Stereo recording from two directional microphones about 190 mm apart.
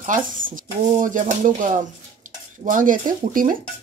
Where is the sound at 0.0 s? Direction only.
40° right (ahead or behind).